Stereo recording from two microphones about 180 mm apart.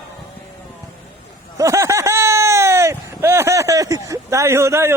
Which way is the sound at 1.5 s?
15° right (ahead or behind).